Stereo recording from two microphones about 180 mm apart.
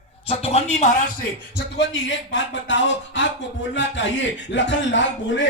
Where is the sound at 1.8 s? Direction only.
85° left.